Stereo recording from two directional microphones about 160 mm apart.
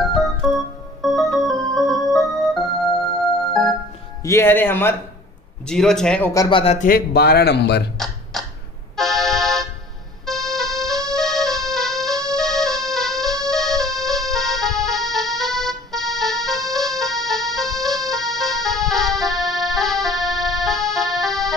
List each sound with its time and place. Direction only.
0.0 s music: centre (ahead or behind)
4.2 s speech: 15° left (ahead or behind)
5.7 s speech: 5° left (ahead or behind)
6.5 s a man's voice: 35° left (ahead or behind)
6.8 s speech: 75° left (ahead or behind); by 7.8 s 90° left
8.0 s a sound: centre (ahead or behind)
8.9 s accordion: centre (ahead or behind)
10.2 s music: centre (ahead or behind)
12.1 s music: 20° right (ahead or behind)
12.4 s music: centre (ahead or behind)
18.0 s accordion: centre (ahead or behind)